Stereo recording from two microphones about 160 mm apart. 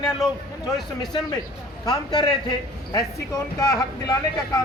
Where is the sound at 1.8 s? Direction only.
25° left (ahead or behind).